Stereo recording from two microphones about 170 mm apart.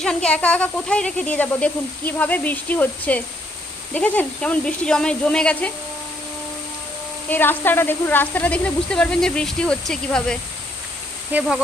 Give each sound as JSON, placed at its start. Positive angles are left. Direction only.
{"t": 0.0, "sound": "speech", "side_deg": 5}
{"t": 7.3, "sound": "speech", "side_deg": 10}
{"t": 11.3, "sound": "speech", "side_deg": -10}